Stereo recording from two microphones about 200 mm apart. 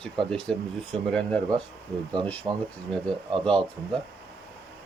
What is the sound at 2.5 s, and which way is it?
Speech, 20° right (ahead or behind).